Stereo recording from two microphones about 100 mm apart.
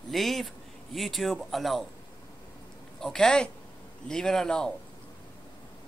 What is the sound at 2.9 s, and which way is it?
Speech, 5° left (ahead or behind).